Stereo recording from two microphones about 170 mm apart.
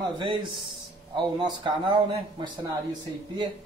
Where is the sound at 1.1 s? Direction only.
30° right (ahead or behind).